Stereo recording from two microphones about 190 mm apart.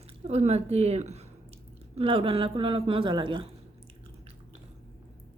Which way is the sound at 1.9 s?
30° right (ahead or behind).